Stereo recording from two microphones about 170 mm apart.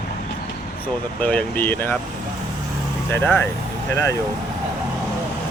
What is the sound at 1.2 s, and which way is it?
Speech, 5° left (ahead or behind).